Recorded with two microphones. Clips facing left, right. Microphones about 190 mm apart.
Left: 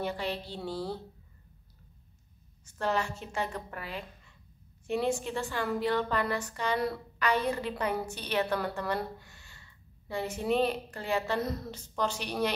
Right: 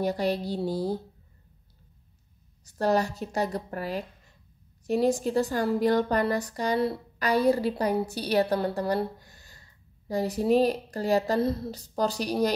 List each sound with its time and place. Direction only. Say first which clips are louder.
0.0 s a woman's voice: right 7 dB; 40° right (ahead or behind)
2.6 s a woman's voice: right 6 dB; 40° right (ahead or behind)